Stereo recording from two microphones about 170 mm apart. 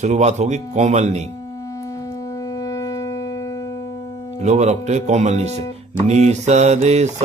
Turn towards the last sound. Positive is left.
turn(degrees=-40)  # may be behind; listen again after turning